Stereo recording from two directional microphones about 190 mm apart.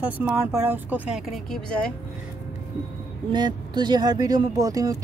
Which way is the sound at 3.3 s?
25° right (ahead or behind).